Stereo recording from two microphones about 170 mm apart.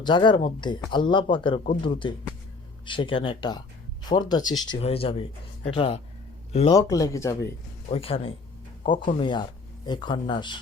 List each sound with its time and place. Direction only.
0.0 s speech: 25° left (ahead or behind)
4.7 s speech: 35° left (ahead or behind)
6.7 s speech: 20° left (ahead or behind)
7.9 s speech: 35° left (ahead or behind)